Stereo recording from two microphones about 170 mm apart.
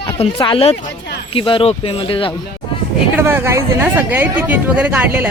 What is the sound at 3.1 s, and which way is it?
Speech, 10° right (ahead or behind).